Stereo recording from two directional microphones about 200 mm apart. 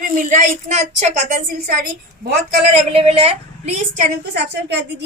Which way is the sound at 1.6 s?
50° right (ahead or behind).